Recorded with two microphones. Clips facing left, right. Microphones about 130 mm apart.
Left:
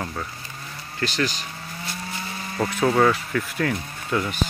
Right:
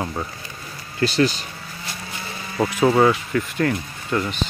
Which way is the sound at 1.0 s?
30° right (ahead or behind).